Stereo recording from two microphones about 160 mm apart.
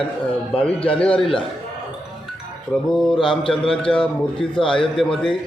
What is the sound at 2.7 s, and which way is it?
Speech, 10° left (ahead or behind).